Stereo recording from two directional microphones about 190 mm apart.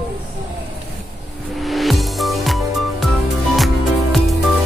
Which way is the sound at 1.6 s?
Centre (ahead or behind).